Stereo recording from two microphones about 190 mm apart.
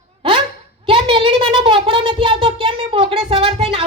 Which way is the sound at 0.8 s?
30° right (ahead or behind).